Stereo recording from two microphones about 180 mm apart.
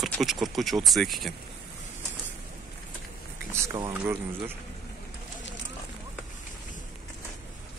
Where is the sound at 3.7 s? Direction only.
20° right (ahead or behind).